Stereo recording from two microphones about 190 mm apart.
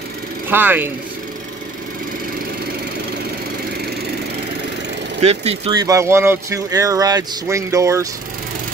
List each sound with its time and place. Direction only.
0.5 s speech: 10° right (ahead or behind)
5.2 s speech: 35° right (ahead or behind)
5.7 s speech: 20° right (ahead or behind)